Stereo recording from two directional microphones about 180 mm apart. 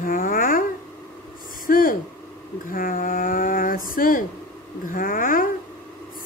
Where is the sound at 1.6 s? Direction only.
50° left (ahead or behind).